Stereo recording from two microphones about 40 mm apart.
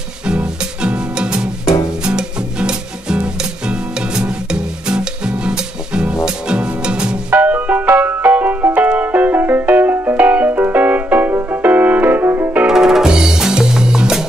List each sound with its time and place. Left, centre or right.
0.3 s music: right
7.3 s music: right
12.6 s music: centre